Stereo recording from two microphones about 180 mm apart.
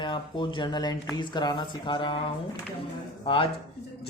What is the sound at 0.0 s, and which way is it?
Speech, 25° left (ahead or behind).